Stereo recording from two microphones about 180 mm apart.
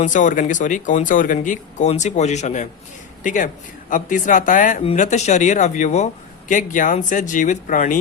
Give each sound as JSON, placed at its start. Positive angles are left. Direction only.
{"t": 0.0, "sound": "speech", "side_deg": 45}